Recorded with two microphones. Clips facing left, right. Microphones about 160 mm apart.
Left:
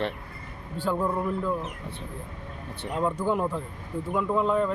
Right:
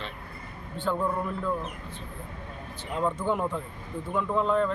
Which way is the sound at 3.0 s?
5° left (ahead or behind).